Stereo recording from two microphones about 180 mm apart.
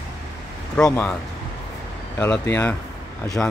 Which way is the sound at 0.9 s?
15° left (ahead or behind).